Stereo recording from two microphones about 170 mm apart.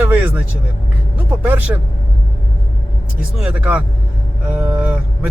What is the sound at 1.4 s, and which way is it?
Speech, 10° right (ahead or behind).